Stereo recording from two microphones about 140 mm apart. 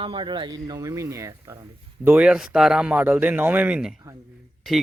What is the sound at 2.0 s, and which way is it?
A man's voice, 10° right (ahead or behind).